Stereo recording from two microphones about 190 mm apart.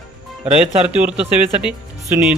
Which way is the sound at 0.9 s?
5° right (ahead or behind).